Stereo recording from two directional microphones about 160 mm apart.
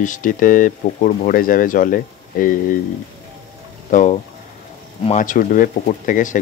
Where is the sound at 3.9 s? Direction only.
50° left (ahead or behind).